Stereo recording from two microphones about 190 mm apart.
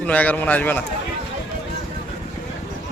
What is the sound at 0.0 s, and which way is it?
Speech, 5° left (ahead or behind).